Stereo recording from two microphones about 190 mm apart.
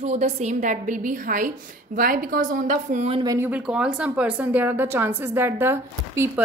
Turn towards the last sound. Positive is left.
turn(degrees=-15)  # may be behind; listen again after turning